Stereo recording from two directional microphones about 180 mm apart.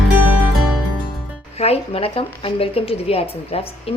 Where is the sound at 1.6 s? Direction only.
35° left (ahead or behind).